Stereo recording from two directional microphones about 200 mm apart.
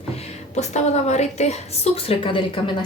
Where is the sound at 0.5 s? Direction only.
35° left (ahead or behind).